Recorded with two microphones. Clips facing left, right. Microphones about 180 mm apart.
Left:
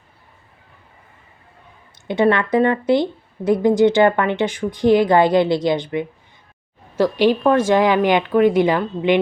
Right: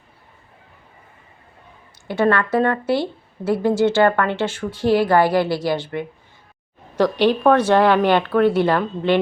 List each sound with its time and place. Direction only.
2.0 s speech: 20° left (ahead or behind)